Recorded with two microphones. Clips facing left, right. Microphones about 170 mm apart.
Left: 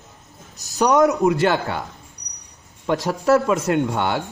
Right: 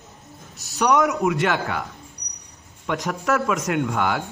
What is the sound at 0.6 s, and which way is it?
A man's voice, 40° left (ahead or behind).